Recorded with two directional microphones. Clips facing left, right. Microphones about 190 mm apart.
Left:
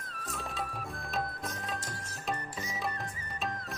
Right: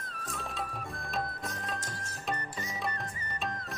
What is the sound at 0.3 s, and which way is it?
Music, centre (ahead or behind).